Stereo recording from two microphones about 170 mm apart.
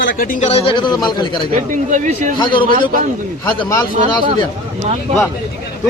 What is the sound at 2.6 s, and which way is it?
Speech, 55° right (ahead or behind).